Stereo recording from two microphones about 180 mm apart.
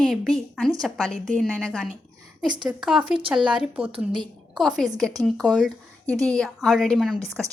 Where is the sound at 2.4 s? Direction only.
25° right (ahead or behind).